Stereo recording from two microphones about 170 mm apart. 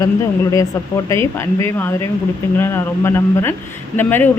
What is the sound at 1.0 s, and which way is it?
A man's voice, 15° left (ahead or behind).